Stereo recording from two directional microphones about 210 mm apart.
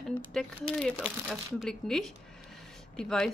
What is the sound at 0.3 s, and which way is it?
Speech, 5° left (ahead or behind).